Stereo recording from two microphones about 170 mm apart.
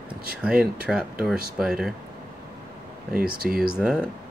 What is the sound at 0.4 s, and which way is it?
Speech, 5° right (ahead or behind).